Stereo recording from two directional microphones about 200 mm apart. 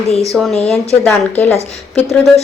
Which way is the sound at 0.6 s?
5° left (ahead or behind).